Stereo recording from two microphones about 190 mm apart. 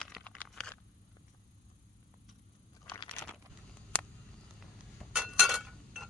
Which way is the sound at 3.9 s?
5° left (ahead or behind).